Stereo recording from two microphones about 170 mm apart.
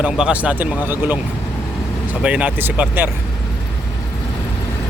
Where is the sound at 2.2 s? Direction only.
10° right (ahead or behind).